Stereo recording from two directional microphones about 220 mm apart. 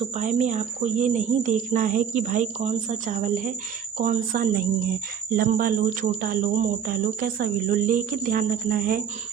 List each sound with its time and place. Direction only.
0.2 s speech: 35° right (ahead or behind)